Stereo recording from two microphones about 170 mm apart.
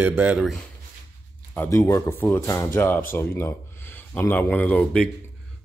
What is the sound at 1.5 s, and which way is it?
Speech, 15° left (ahead or behind).